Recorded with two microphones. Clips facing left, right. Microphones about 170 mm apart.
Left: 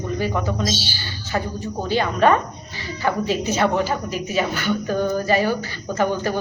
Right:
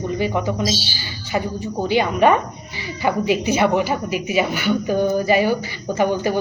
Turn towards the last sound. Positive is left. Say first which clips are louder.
# right 2 dB
turn(degrees=-15)  # may be behind; listen again after turning